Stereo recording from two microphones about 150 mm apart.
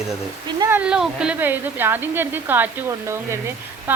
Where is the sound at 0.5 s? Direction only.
20° right (ahead or behind).